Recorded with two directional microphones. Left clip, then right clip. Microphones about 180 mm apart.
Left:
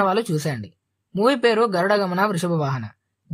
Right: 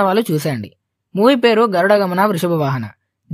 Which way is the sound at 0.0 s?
40° right (ahead or behind).